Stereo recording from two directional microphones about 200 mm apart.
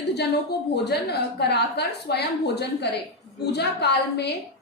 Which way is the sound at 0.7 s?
55° left (ahead or behind).